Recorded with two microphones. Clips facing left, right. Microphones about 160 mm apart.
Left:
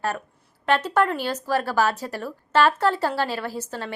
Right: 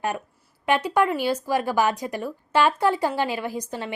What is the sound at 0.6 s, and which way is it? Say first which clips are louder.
Speech: even; 10° right (ahead or behind).